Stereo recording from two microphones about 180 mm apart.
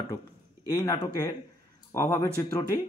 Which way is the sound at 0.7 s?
20° left (ahead or behind).